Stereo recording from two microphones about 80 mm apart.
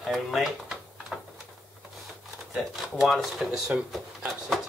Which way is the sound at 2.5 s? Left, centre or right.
Centre.